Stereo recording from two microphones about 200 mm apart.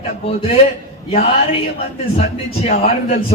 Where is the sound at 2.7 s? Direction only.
45° left (ahead or behind).